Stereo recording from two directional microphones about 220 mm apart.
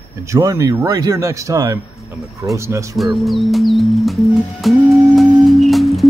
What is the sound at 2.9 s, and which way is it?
Speech, centre (ahead or behind).